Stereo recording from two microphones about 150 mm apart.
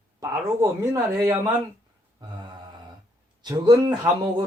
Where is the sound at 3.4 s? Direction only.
25° right (ahead or behind).